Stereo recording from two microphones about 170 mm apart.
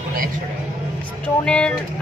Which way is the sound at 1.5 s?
5° left (ahead or behind).